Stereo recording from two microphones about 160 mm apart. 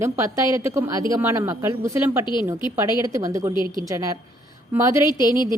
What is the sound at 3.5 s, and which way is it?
Speech, 25° left (ahead or behind).